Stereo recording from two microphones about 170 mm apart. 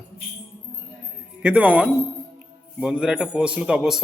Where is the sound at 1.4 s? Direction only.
10° right (ahead or behind).